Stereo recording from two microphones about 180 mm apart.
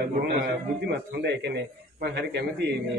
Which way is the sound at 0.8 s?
70° right (ahead or behind).